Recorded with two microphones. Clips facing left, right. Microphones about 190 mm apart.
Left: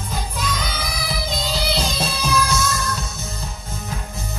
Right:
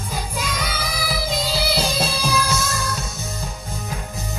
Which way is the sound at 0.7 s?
5° right (ahead or behind).